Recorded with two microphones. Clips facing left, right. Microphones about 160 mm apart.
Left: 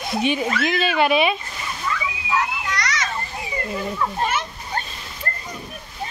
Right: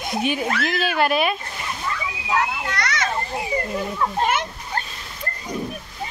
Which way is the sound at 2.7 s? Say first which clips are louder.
Right 1 dB; 55° right (ahead or behind).